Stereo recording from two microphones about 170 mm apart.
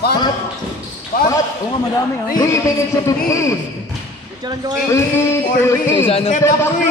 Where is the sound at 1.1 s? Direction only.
55° left (ahead or behind).